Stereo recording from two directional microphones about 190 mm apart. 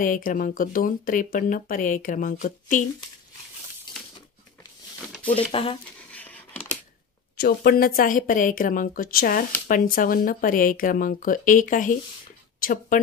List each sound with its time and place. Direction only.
0.0 s speech: 45° left (ahead or behind)
5.3 s speech: 30° left (ahead or behind)
6.1 s a sound: 10° left (ahead or behind)
7.3 s speech: 55° left (ahead or behind)